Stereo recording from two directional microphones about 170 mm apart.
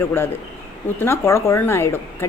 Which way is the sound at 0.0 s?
15° left (ahead or behind).